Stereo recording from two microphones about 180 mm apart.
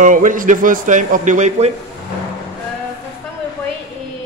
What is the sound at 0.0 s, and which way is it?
A man's voice, 45° right (ahead or behind).